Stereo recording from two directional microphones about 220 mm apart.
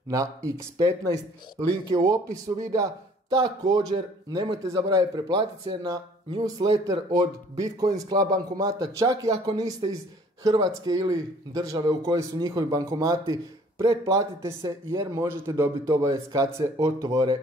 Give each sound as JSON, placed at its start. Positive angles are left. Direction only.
{"t": 0.1, "sound": "speech", "side_deg": -15}